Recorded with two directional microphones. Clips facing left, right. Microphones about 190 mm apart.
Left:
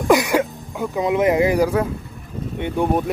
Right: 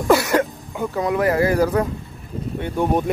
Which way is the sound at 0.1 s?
15° left (ahead or behind).